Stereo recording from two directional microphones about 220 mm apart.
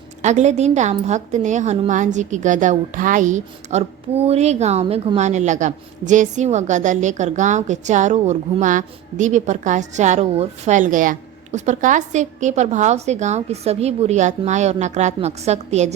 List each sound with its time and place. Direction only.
0.2 s a woman's voice: 30° right (ahead or behind)